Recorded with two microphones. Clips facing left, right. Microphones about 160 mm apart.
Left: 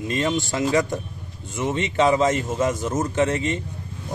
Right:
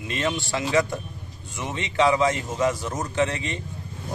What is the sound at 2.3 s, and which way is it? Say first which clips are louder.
A man's voice: left 2 dB; 45° left (ahead or behind).